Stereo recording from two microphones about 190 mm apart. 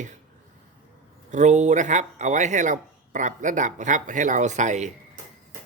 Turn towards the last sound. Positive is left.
turn(degrees=-40)  # may be behind; listen again after turning